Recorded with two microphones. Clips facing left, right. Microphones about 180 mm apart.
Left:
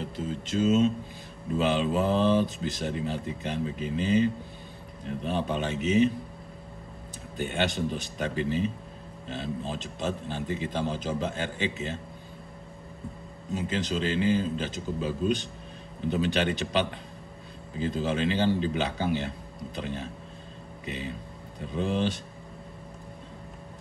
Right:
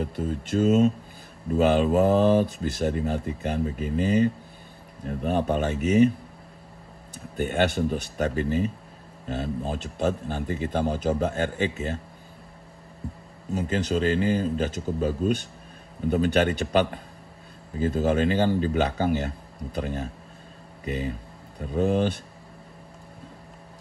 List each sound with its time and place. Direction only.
0.0 s speech: 55° right (ahead or behind)
7.3 s speech: 50° right (ahead or behind)
13.5 s speech: 50° right (ahead or behind)